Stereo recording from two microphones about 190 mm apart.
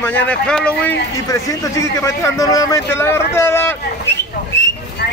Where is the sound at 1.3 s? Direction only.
15° left (ahead or behind).